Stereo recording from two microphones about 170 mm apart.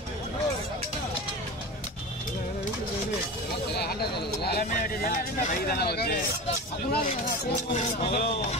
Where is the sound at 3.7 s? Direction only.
70° left (ahead or behind).